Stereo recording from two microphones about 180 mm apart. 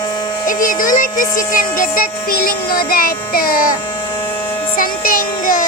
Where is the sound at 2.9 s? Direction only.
55° left (ahead or behind).